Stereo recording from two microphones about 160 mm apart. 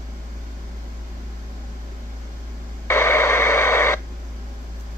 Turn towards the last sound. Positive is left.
turn(degrees=15)  # may be behind; listen again after turning